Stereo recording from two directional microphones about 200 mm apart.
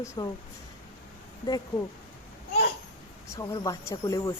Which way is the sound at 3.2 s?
15° left (ahead or behind).